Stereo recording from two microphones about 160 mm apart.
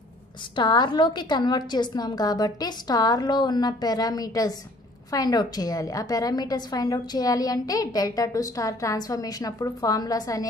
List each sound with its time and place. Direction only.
0.6 s a woman's voice: 30° left (ahead or behind)